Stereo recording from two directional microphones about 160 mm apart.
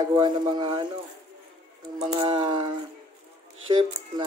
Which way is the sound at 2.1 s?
30° right (ahead or behind).